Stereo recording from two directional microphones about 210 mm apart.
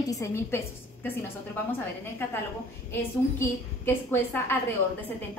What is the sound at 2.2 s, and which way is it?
A woman's voice, 10° left (ahead or behind).